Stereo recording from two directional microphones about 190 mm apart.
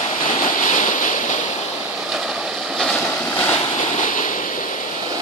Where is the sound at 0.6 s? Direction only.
45° left (ahead or behind).